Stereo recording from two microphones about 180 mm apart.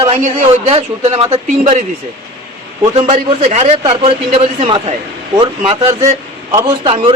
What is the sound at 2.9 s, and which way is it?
A man's voice, 35° right (ahead or behind).